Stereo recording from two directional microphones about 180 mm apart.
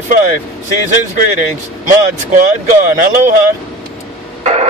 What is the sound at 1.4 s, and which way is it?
Speech, 50° right (ahead or behind).